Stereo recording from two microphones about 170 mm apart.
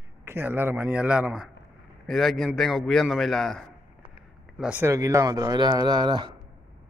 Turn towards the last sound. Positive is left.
turn(degrees=-25)  # may be behind; listen again after turning